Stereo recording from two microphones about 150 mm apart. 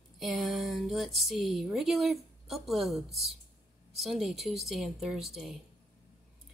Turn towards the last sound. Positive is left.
turn(degrees=-5)  # may be behind; listen again after turning